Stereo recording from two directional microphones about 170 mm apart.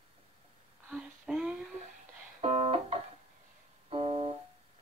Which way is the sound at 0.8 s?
5° right (ahead or behind).